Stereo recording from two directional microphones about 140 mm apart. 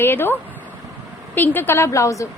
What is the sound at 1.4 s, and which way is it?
Speech, 15° left (ahead or behind).